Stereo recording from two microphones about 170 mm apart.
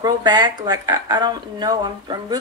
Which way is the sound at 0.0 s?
25° right (ahead or behind).